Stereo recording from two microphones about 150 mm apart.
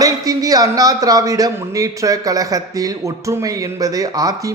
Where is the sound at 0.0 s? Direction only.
25° right (ahead or behind).